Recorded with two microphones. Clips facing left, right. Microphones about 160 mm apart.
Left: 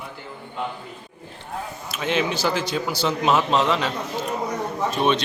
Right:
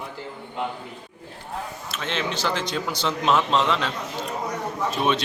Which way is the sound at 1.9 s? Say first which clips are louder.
Left 6 dB; 10° left (ahead or behind).